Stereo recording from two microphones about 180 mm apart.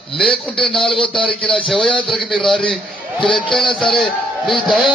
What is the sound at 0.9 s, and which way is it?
Speech, 30° left (ahead or behind).